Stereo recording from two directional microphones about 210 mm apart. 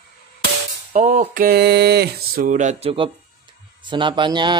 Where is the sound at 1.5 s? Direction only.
50° right (ahead or behind); by 3.1 s 25° right (ahead or behind).